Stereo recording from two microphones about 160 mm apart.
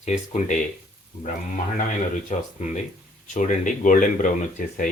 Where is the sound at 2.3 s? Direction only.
50° left (ahead or behind).